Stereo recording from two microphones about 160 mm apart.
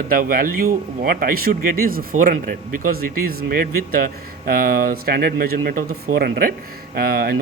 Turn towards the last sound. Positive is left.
turn(degrees=-70)  # may be behind; listen again after turning